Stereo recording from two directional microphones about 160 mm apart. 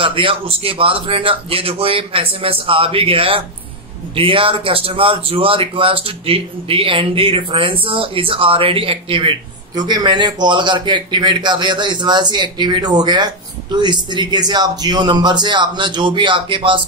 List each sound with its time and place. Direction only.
0.0 s a man's voice: 35° right (ahead or behind)